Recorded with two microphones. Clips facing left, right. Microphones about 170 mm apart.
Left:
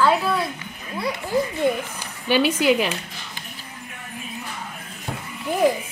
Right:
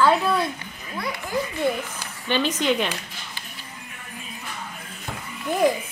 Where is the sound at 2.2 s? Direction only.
10° left (ahead or behind).